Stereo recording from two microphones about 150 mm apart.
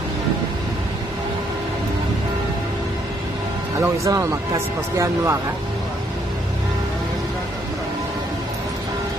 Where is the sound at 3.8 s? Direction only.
20° right (ahead or behind).